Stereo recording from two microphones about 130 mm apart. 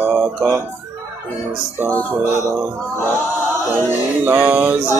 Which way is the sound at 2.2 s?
20° right (ahead or behind).